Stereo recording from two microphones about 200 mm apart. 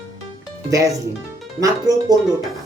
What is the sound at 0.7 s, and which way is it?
Speech, 15° right (ahead or behind).